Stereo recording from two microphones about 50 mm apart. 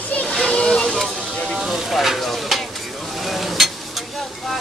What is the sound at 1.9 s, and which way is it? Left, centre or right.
Stir, centre.